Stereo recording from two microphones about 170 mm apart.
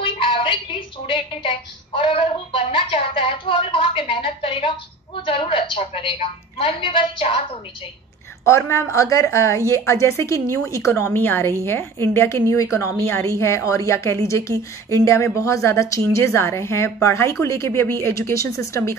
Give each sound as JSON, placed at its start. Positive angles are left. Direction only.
{"t": 0.0, "sound": "a woman's voice", "side_deg": 30}
{"t": 8.5, "sound": "a woman's voice", "side_deg": 15}